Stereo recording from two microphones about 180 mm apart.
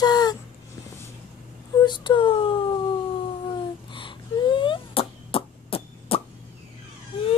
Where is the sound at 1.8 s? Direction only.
25° left (ahead or behind).